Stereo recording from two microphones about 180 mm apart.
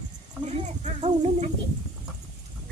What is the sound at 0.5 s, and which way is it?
Speech, 35° right (ahead or behind).